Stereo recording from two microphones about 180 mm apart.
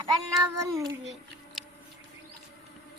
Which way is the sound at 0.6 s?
15° right (ahead or behind).